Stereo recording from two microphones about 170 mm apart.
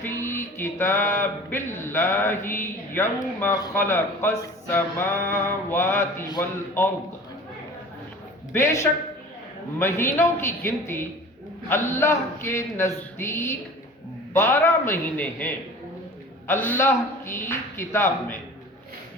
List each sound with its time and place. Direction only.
0.0 s speech: 15° left (ahead or behind)
8.5 s speech: 15° left (ahead or behind)